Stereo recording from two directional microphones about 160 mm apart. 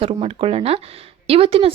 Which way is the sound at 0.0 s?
35° right (ahead or behind).